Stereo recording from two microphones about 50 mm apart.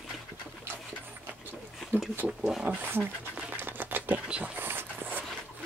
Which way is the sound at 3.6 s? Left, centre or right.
Right.